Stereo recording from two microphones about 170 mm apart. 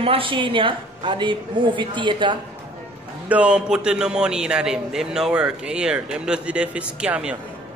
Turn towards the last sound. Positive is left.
turn(degrees=-5)  # may be behind; listen again after turning